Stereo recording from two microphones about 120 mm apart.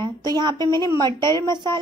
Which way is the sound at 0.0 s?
35° right (ahead or behind).